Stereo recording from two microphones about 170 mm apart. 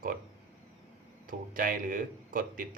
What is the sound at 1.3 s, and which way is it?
Speech, 55° right (ahead or behind).